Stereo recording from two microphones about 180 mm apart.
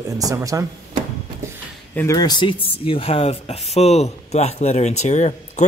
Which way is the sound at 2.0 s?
20° left (ahead or behind).